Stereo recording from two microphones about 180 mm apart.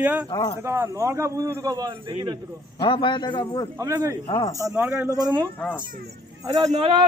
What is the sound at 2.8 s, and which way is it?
Speech, 25° left (ahead or behind).